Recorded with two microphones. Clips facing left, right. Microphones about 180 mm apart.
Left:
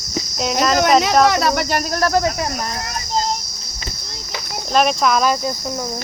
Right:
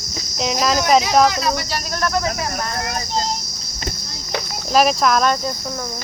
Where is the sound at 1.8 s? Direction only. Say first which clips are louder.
Left 4 dB; 40° left (ahead or behind).